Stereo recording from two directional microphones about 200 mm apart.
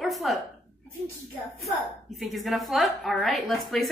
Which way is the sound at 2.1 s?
Centre (ahead or behind).